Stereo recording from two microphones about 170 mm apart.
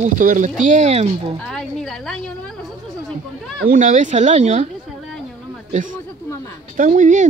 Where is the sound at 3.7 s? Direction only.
50° right (ahead or behind).